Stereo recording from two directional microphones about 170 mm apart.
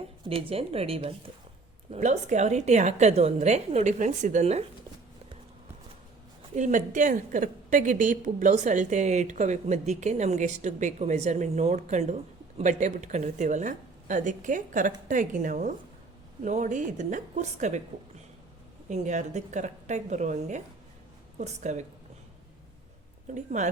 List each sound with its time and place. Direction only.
0.3 s a woman's voice: 35° right (ahead or behind)
6.6 s a woman's voice: 45° right (ahead or behind)
18.9 s a woman's voice: 45° right (ahead or behind)
23.3 s a woman's voice: 45° right (ahead or behind)